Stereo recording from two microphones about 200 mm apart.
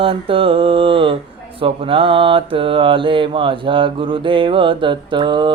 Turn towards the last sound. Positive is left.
turn(degrees=-25)  # may be behind; listen again after turning